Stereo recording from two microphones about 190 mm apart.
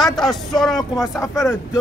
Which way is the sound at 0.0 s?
Centre (ahead or behind).